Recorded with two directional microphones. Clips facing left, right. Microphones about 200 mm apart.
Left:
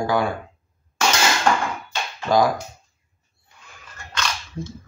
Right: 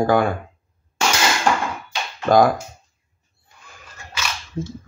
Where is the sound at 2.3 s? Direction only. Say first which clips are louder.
Right 4 dB; 55° right (ahead or behind).